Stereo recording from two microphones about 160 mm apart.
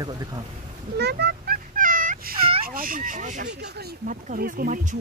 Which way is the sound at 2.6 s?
60° right (ahead or behind).